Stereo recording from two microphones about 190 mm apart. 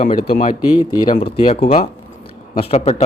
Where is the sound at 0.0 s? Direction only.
40° left (ahead or behind).